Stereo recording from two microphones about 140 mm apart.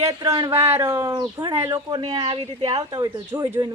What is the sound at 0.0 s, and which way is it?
Speech, 25° right (ahead or behind).